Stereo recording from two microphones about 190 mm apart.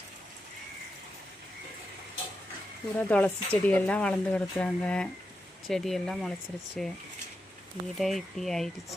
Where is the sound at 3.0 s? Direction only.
10° left (ahead or behind).